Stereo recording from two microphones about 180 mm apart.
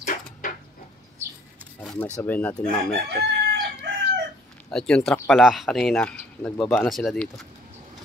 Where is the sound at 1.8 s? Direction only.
5° left (ahead or behind).